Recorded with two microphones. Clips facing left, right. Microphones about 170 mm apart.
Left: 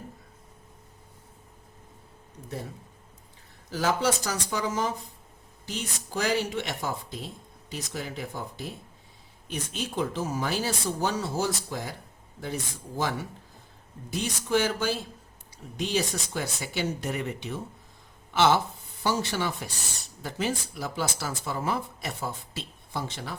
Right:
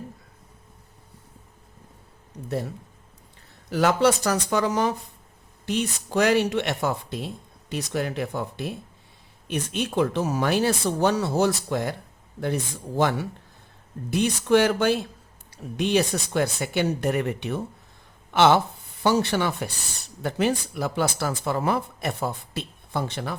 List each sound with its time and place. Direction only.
3.7 s speech: 70° right (ahead or behind)
14.1 s speech: 65° right (ahead or behind)